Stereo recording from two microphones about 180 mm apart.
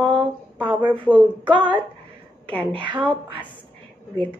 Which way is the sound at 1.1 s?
10° right (ahead or behind).